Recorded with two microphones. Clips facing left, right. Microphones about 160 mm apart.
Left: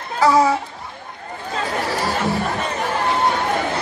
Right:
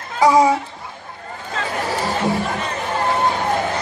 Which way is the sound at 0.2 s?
15° right (ahead or behind).